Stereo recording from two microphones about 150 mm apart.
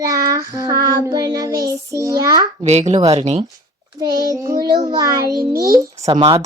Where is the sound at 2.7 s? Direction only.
50° right (ahead or behind).